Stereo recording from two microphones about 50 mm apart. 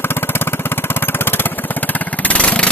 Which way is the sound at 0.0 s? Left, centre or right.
Left.